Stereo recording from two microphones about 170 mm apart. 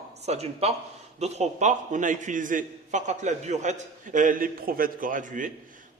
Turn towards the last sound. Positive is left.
turn(degrees=-50)  # may be behind; listen again after turning